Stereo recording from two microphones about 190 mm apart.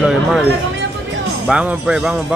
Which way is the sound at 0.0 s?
Centre (ahead or behind).